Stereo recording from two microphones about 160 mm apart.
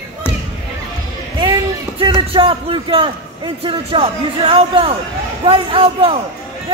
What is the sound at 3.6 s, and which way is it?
A man's voice, 35° right (ahead or behind).